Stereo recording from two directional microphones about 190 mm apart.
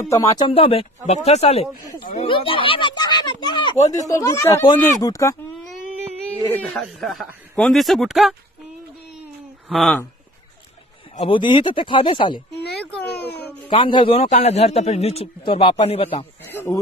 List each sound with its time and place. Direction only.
0.1 s speech: 20° left (ahead or behind)
0.5 s a man's voice: 30° left (ahead or behind)
6.6 s speech: centre (ahead or behind)
9.7 s speech: centre (ahead or behind)
11.1 s speech: 25° left (ahead or behind)
13.2 s a sound: 10° left (ahead or behind)
13.7 s a man's voice: 25° left (ahead or behind)
16.4 s speech: 10° left (ahead or behind)